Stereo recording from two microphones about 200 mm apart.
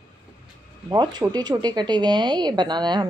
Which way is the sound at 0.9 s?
20° right (ahead or behind).